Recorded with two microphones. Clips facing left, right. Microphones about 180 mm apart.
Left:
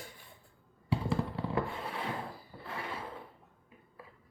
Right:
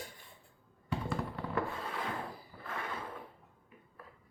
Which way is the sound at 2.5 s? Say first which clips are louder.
Left 2 dB; 25° left (ahead or behind).